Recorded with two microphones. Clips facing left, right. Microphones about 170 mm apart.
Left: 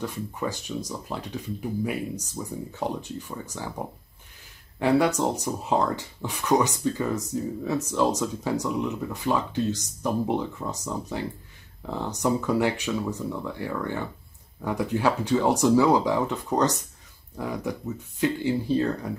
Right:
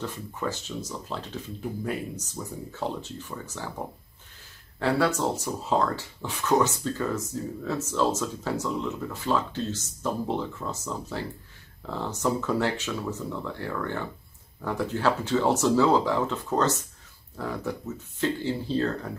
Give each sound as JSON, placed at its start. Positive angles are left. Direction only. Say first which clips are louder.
{"t": 0.0, "sound": "speech", "louder": "left 2 dB", "side_deg": 15}
{"t": 4.7, "sound": "speech", "louder": "left 3 dB", "side_deg": 15}